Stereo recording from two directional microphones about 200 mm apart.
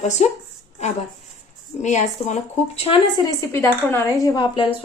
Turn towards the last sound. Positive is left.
turn(degrees=25)  # may be behind; listen again after turning